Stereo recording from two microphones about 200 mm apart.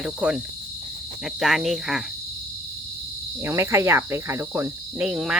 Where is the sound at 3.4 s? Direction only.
10° right (ahead or behind).